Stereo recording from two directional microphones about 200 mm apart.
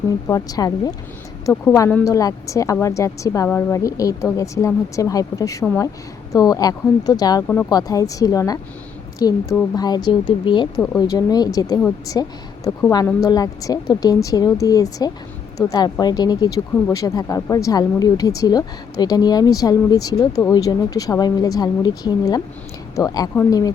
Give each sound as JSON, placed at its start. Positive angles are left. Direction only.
{"t": 0.3, "sound": "a woman's voice", "side_deg": 20}
{"t": 7.4, "sound": "a woman's voice", "side_deg": 10}
{"t": 7.7, "sound": "a woman's voice", "side_deg": 20}
{"t": 23.3, "sound": "a woman's voice", "side_deg": 10}